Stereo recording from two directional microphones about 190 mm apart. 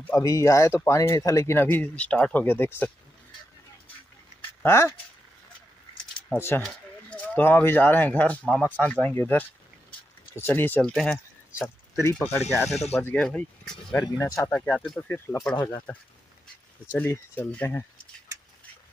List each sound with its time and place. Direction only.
0.0 s speech: 15° left (ahead or behind)
4.6 s speech: 10° left (ahead or behind)
6.3 s speech: 10° left (ahead or behind)
16.9 s speech: 10° left (ahead or behind)